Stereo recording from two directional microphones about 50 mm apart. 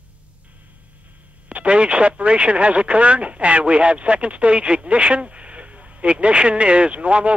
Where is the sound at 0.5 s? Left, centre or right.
Right.